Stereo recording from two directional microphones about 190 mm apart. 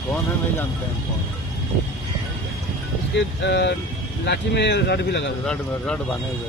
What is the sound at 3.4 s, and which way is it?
Speech, 65° left (ahead or behind).